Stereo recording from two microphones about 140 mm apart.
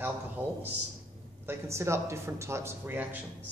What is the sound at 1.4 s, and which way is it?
Speech, 20° right (ahead or behind).